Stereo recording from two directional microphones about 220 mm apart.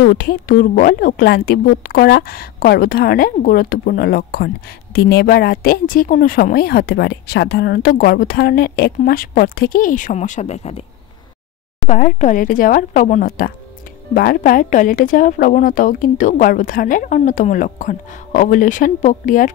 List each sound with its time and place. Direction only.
0.0 s a woman's voice: 45° left (ahead or behind); by 10.9 s 30° left (ahead or behind)
11.9 s a woman's voice: 40° left (ahead or behind)